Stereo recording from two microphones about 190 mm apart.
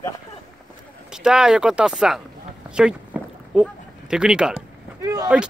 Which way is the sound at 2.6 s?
5° right (ahead or behind).